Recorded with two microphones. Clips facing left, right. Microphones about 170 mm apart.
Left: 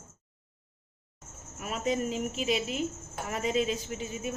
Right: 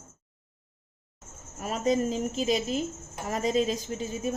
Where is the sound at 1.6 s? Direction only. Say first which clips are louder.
Right 4 dB; 40° right (ahead or behind).